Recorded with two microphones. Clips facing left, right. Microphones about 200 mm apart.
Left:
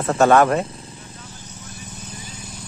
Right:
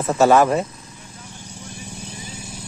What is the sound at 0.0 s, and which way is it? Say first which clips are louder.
Speech: even; centre (ahead or behind).